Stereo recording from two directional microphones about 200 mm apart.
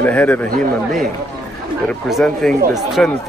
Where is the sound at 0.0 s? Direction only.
10° left (ahead or behind).